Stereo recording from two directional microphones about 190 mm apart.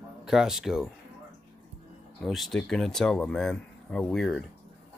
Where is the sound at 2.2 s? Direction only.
Centre (ahead or behind).